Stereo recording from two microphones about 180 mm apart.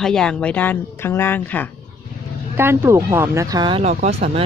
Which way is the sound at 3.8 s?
40° right (ahead or behind).